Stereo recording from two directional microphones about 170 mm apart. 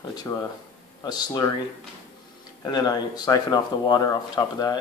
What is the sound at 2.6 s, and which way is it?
Speech, 25° left (ahead or behind).